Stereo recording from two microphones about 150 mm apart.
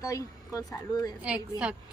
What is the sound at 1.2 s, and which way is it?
Speech, 5° right (ahead or behind).